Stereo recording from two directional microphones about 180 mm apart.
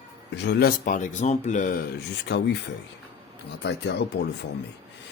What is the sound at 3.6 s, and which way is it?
Speech, 70° left (ahead or behind).